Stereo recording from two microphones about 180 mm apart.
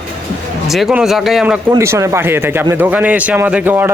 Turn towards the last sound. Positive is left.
turn(degrees=-10)  # may be behind; listen again after turning